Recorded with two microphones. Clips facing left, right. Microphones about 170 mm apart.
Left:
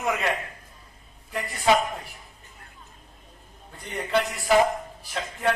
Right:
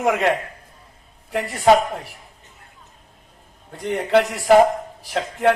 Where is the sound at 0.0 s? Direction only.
75° right (ahead or behind).